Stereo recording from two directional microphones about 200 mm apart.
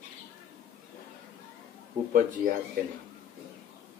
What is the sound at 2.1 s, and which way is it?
Speech, 45° right (ahead or behind).